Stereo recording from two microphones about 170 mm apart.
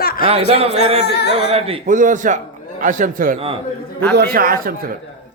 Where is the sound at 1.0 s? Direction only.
75° left (ahead or behind).